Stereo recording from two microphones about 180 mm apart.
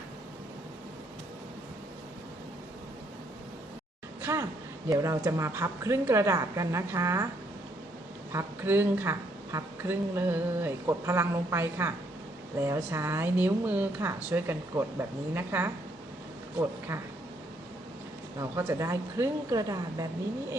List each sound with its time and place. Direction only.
4.2 s a sound: 15° right (ahead or behind)
4.9 s a woman's voice: 15° right (ahead or behind)
8.3 s a woman's voice: 15° right (ahead or behind)
18.3 s a woman's voice: 15° right (ahead or behind)